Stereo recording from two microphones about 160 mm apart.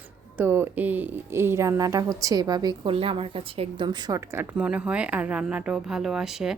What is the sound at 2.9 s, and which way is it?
A woman's voice, 35° right (ahead or behind).